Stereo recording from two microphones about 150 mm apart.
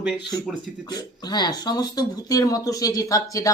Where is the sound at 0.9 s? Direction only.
25° left (ahead or behind).